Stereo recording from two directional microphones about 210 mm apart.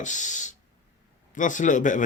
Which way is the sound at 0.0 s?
35° left (ahead or behind).